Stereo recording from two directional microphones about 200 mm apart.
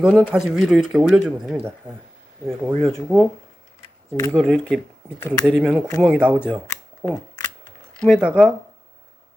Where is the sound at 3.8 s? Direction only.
15° left (ahead or behind).